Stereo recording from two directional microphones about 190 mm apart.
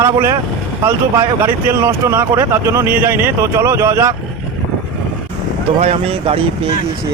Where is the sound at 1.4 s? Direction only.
15° right (ahead or behind).